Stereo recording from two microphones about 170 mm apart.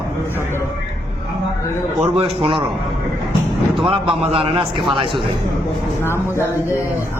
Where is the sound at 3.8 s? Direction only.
30° right (ahead or behind).